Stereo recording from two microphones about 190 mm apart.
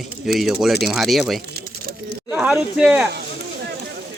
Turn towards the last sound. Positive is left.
turn(degrees=-5)  # may be behind; listen again after turning